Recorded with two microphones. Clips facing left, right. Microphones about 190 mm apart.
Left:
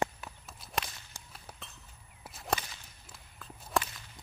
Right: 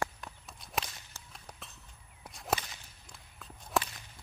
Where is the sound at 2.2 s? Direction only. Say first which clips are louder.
Even; centre (ahead or behind).